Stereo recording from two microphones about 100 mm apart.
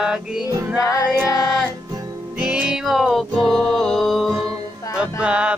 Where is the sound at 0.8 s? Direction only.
35° left (ahead or behind).